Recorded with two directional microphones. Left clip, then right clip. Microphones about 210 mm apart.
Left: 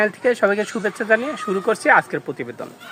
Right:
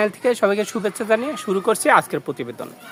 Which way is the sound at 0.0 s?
10° right (ahead or behind).